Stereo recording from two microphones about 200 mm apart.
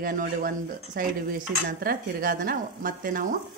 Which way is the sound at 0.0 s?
45° right (ahead or behind).